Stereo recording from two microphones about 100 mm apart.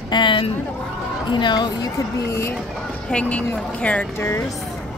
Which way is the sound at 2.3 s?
25° left (ahead or behind).